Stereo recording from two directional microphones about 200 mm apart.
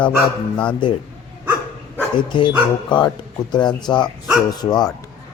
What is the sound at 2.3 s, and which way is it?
Speech, 25° left (ahead or behind).